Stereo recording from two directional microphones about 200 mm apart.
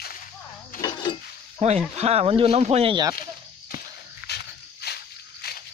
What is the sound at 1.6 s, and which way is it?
Speech, 35° right (ahead or behind).